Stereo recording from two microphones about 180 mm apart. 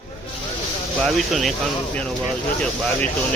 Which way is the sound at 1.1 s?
Centre (ahead or behind).